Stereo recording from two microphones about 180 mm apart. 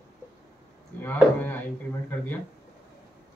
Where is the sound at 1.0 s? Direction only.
10° left (ahead or behind).